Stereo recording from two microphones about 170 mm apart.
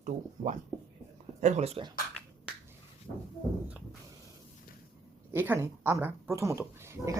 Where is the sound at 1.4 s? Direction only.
45° right (ahead or behind).